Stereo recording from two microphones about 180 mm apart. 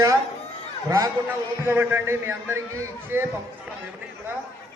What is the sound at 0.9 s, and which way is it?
A man's voice, 20° right (ahead or behind).